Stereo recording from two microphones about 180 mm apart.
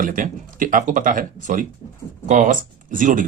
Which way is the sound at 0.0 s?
50° right (ahead or behind).